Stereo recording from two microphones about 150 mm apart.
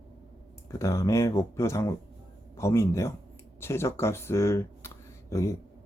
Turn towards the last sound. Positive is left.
turn(degrees=20)  # may be behind; listen again after turning